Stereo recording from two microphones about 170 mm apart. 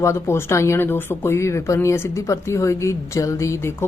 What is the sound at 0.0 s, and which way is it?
Speech, 15° left (ahead or behind).